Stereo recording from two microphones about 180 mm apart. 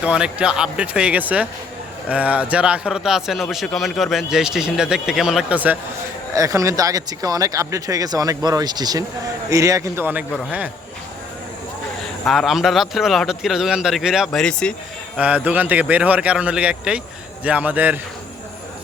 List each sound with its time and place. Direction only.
0.0 s a man's voice: 5° right (ahead or behind)
6.3 s a man's voice: 20° right (ahead or behind)
12.2 s a man's voice: centre (ahead or behind)
15.2 s a man's voice: 5° right (ahead or behind)